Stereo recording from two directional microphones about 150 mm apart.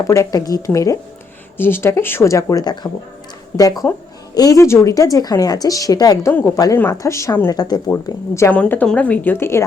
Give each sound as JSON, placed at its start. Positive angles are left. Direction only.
{"t": 0.0, "sound": "speech", "side_deg": 20}